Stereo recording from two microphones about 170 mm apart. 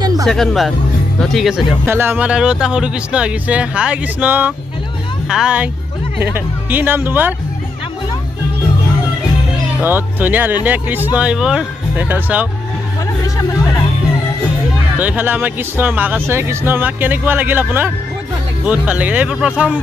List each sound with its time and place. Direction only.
0.0 s music: 20° right (ahead or behind)
0.3 s speech: centre (ahead or behind)
1.9 s speech: 10° right (ahead or behind)
9.8 s speech: 10° right (ahead or behind)
13.4 s music: 20° left (ahead or behind)
15.0 s speech: 10° right (ahead or behind)